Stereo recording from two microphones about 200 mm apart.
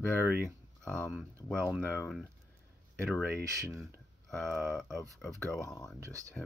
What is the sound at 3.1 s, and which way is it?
Speech, 15° right (ahead or behind).